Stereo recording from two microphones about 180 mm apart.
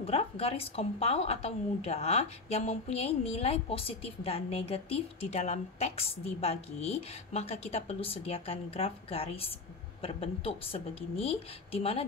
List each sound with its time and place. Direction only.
0.0 s a woman's voice: 35° left (ahead or behind)